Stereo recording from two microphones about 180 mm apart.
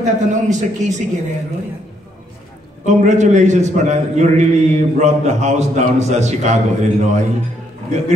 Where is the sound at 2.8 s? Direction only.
40° right (ahead or behind).